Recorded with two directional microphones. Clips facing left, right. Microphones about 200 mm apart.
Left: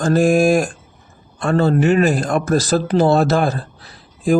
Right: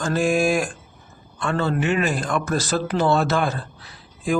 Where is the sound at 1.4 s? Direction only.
40° left (ahead or behind).